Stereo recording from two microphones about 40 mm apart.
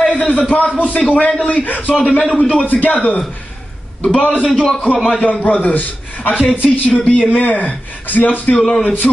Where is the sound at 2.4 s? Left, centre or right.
Left.